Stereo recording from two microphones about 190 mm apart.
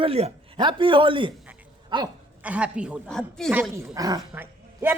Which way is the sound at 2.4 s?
5° right (ahead or behind).